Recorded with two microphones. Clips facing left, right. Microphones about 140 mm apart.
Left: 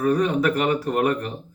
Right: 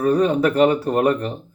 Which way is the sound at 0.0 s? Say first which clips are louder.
Right 3 dB; 30° right (ahead or behind).